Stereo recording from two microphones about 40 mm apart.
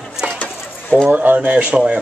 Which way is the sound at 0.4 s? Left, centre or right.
Left.